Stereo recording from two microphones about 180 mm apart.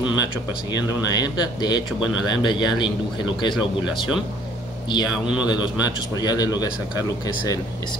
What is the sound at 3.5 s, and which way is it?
Speech, centre (ahead or behind).